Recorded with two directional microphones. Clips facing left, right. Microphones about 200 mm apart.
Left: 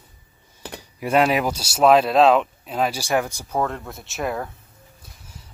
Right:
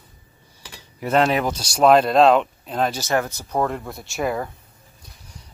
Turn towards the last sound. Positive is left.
turn(degrees=0)  # may be behind; listen again after turning